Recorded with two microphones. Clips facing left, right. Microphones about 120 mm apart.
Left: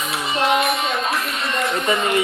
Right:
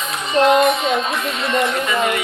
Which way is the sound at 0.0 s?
10° left (ahead or behind).